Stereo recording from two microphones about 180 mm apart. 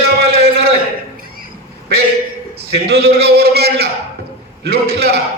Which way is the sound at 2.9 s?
65° right (ahead or behind).